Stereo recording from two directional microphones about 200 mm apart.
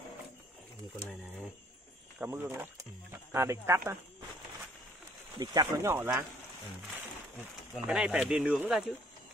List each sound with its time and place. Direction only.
2.1 s speech: 10° right (ahead or behind)
5.4 s speech: 20° right (ahead or behind)
7.7 s speech: 5° right (ahead or behind)